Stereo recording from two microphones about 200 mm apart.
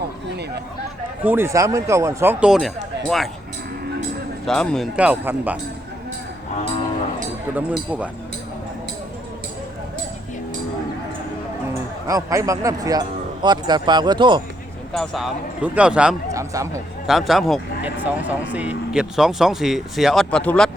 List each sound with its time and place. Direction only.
1.2 s speech: 10° right (ahead or behind)
4.4 s speech: 5° left (ahead or behind)
7.9 s speech: 5° right (ahead or behind)
12.0 s speech: 15° right (ahead or behind)
14.9 s speech: centre (ahead or behind)
16.3 s speech: 15° right (ahead or behind)
17.1 s speech: centre (ahead or behind)